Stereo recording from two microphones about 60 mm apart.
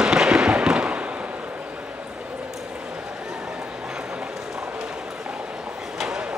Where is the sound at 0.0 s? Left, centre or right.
Centre.